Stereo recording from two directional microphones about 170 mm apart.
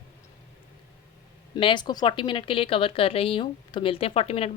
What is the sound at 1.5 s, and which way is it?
Speech, 25° left (ahead or behind).